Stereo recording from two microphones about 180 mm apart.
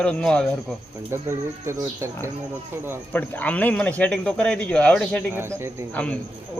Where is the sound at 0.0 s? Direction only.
5° left (ahead or behind).